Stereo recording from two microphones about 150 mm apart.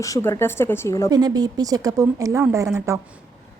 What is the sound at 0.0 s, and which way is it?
Speech, 20° left (ahead or behind).